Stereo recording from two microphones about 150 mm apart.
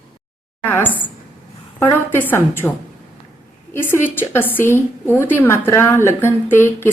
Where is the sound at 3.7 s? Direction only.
15° left (ahead or behind).